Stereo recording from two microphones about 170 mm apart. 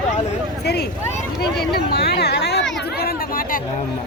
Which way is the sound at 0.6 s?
70° left (ahead or behind).